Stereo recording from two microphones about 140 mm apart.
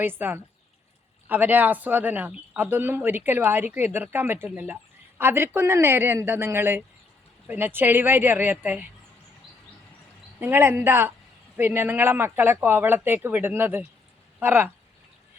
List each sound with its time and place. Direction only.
0.0 s speech: 15° right (ahead or behind)
10.4 s speech: 15° right (ahead or behind)